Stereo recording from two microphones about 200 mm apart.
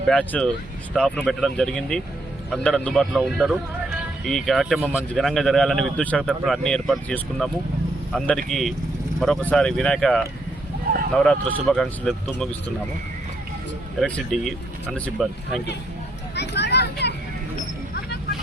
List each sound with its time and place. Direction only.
0.1 s speech: 5° left (ahead or behind)
14.0 s speech: centre (ahead or behind)
16.3 s vehicle: 60° left (ahead or behind)